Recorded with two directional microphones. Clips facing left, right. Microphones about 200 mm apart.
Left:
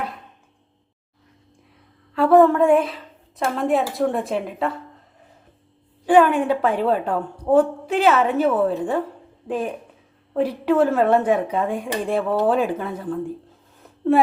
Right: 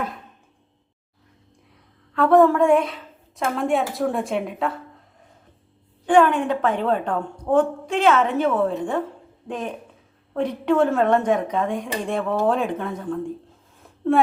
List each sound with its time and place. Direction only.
2.1 s a woman's voice: centre (ahead or behind)
6.1 s speech: 10° left (ahead or behind)
13.8 s a sound: centre (ahead or behind)